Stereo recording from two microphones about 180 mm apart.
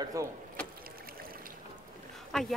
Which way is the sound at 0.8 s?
55° right (ahead or behind).